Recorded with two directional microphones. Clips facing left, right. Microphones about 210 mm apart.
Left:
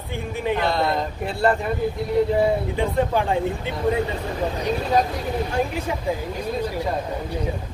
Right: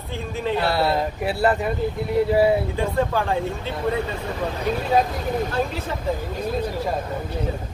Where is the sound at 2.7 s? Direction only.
15° left (ahead or behind).